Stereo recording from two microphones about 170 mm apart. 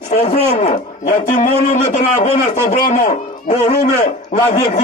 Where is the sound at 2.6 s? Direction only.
50° left (ahead or behind).